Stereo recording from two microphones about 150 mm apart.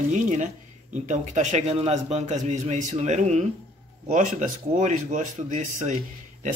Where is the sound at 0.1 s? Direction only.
55° right (ahead or behind).